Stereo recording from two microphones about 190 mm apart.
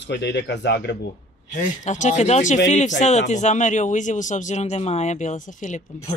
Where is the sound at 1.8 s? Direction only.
40° left (ahead or behind).